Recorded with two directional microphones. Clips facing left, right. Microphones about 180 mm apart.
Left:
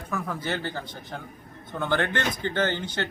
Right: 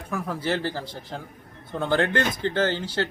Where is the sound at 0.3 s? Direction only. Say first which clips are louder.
Right 4 dB; 30° right (ahead or behind).